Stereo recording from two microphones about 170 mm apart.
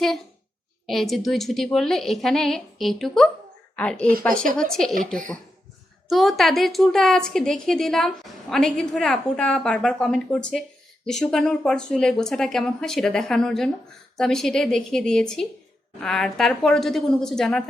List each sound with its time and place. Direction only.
0.9 s a woman's voice: centre (ahead or behind)
4.9 s speech: 50° right (ahead or behind)
6.1 s a woman's voice: centre (ahead or behind)